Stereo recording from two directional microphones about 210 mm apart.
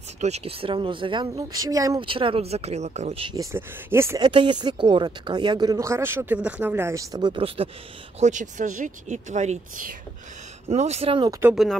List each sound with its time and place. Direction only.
0.2 s speech: 30° right (ahead or behind)
3.5 s speech: 10° right (ahead or behind)
4.3 s speech: 20° right (ahead or behind)
11.4 s speech: centre (ahead or behind)